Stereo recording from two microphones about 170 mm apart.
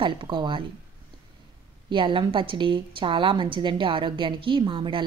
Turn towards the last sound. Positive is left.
turn(degrees=-30)  # may be behind; listen again after turning